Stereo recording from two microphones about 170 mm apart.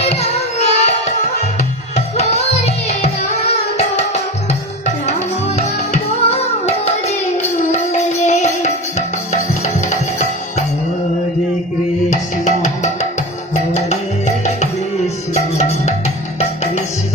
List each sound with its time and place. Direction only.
0.0 s child singing: 40° left (ahead or behind)
2.1 s music: 40° left (ahead or behind)
5.5 s music: 40° left (ahead or behind)
12.1 s music: 45° left (ahead or behind)